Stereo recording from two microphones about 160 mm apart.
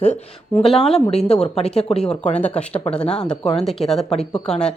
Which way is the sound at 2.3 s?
10° left (ahead or behind).